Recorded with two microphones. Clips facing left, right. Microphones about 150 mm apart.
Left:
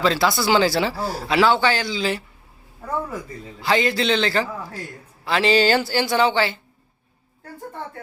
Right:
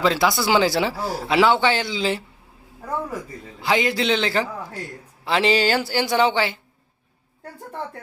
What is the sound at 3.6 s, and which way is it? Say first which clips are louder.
Speech: left 1 dB; 15° right (ahead or behind).